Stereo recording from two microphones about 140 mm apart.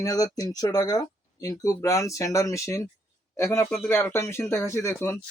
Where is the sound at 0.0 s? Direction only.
25° left (ahead or behind).